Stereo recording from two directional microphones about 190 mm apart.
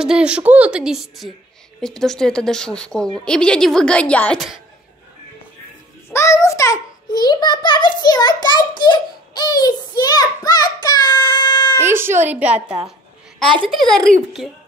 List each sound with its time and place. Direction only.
0.0 s a woman's voice: 5° right (ahead or behind)
6.0 s a child's voice: 15° left (ahead or behind)
11.8 s a woman's voice: 10° right (ahead or behind)